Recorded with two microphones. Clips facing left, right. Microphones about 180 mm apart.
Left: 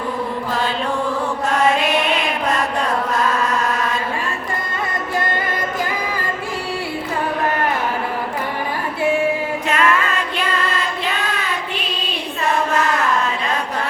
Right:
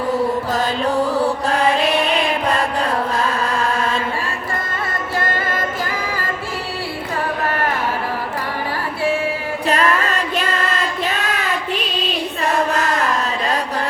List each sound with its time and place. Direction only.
9.6 s music: 35° right (ahead or behind)